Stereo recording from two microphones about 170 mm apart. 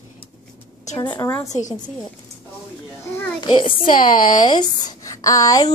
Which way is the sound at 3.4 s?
25° left (ahead or behind).